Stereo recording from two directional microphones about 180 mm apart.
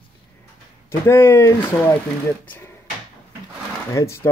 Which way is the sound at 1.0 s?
10° left (ahead or behind).